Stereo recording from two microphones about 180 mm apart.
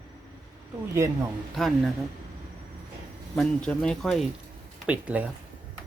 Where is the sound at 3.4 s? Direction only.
5° left (ahead or behind).